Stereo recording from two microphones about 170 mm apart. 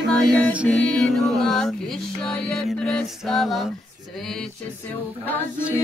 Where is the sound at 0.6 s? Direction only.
Centre (ahead or behind).